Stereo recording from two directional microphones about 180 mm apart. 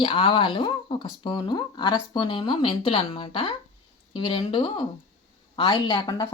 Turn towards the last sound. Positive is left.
turn(degrees=20)  # may be behind; listen again after turning